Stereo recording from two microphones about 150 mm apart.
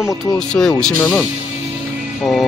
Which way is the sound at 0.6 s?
10° left (ahead or behind).